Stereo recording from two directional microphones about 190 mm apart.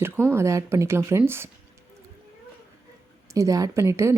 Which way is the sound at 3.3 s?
20° right (ahead or behind).